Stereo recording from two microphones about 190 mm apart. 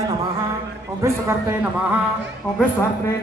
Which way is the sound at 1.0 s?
15° right (ahead or behind).